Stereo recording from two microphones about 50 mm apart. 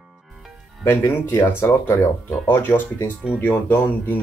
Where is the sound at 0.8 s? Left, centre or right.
Left.